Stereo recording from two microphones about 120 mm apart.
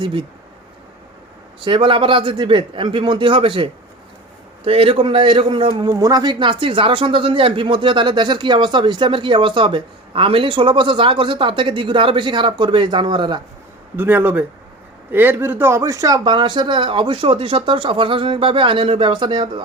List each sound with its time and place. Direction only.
0.0 s speech: 45° right (ahead or behind)
1.6 s speech: 45° right (ahead or behind)
5.9 s speech: 30° right (ahead or behind)
13.9 s speech: 15° right (ahead or behind); by 19.6 s 40° right (ahead or behind)